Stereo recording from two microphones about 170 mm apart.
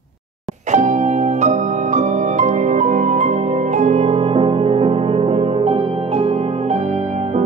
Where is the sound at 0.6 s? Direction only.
45° right (ahead or behind).